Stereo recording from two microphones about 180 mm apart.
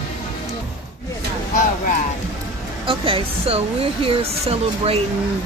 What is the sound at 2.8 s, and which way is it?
Speech, 30° right (ahead or behind).